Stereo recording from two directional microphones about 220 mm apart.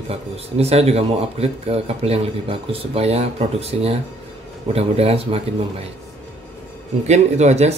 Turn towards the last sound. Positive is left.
turn(degrees=-30)  # may be behind; listen again after turning